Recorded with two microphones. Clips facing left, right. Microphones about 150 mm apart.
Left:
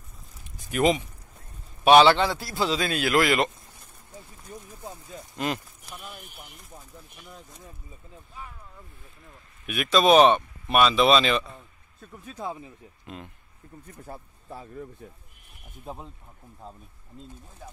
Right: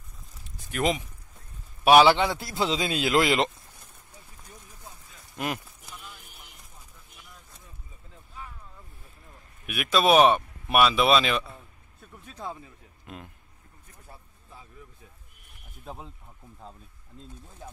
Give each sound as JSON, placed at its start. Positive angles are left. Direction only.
{"t": 0.7, "sound": "speech", "side_deg": 5}
{"t": 1.9, "sound": "a man's voice", "side_deg": -10}
{"t": 9.7, "sound": "speech", "side_deg": -5}
{"t": 12.4, "sound": "speech", "side_deg": 15}
{"t": 13.0, "sound": "speech", "side_deg": -5}
{"t": 14.0, "sound": "speech", "side_deg": 50}